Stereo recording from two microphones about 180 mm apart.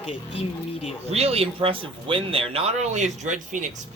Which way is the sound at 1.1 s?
35° right (ahead or behind).